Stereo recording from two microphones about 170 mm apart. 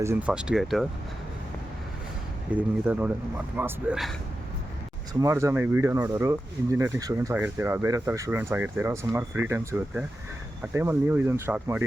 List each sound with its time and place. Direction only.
0.0 s speech: 10° right (ahead or behind)
2.5 s speech: 10° right (ahead or behind)
5.2 s speech: 15° right (ahead or behind)